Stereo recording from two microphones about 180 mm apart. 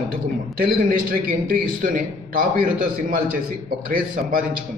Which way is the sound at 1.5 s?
50° right (ahead or behind).